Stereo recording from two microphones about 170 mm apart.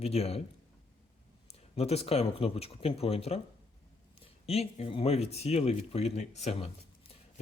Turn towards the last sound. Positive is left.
turn(degrees=40)  # may be behind; listen again after turning